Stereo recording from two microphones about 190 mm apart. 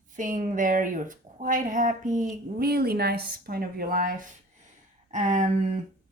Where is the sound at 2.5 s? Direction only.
55° right (ahead or behind).